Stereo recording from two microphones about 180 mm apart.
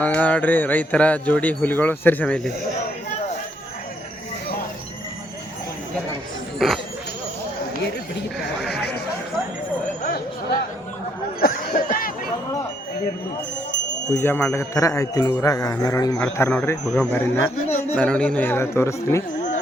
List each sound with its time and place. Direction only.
0.0 s speech: 10° left (ahead or behind)
8.6 s chatter: 5° left (ahead or behind)
11.3 s a sound: 55° left (ahead or behind)
14.1 s speech: 10° left (ahead or behind)
16.2 s speech: 5° left (ahead or behind)